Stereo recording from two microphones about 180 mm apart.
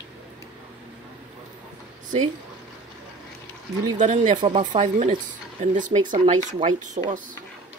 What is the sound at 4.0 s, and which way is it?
Speech, 40° right (ahead or behind).